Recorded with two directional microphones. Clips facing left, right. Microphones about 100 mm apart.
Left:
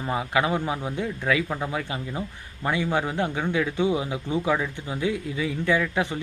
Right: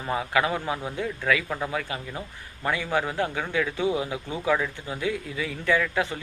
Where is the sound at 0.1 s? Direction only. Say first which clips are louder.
Left 1 dB; 20° left (ahead or behind).